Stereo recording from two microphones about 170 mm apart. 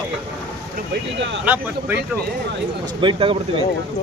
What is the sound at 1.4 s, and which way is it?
Speech, 10° right (ahead or behind).